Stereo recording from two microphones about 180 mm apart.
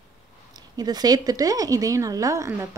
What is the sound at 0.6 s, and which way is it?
A woman's voice, 20° right (ahead or behind).